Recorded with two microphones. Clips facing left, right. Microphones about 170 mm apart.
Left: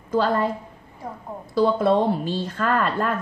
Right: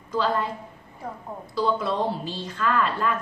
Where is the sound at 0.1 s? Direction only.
50° left (ahead or behind).